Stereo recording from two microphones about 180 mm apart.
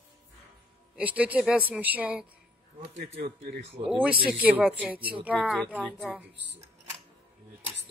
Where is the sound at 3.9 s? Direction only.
5° right (ahead or behind).